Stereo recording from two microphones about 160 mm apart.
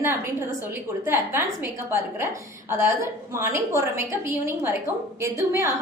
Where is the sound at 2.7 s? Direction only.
15° right (ahead or behind).